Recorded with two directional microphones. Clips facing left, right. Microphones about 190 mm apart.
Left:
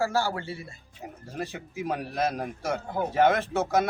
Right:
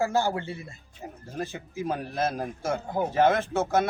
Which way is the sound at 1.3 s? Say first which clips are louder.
Right 1 dB; centre (ahead or behind).